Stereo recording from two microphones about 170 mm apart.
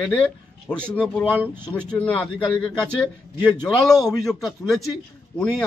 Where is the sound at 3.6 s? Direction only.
25° left (ahead or behind).